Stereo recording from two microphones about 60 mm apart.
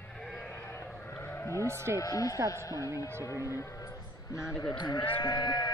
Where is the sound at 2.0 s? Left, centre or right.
Left.